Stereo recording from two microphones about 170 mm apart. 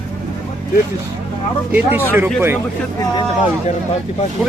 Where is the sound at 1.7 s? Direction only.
10° right (ahead or behind).